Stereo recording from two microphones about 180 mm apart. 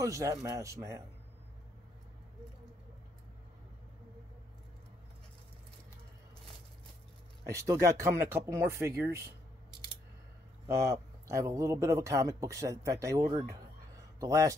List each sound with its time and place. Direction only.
0.0 s speech: 20° right (ahead or behind)
7.4 s speech: 15° right (ahead or behind)
10.7 s speech: 15° right (ahead or behind)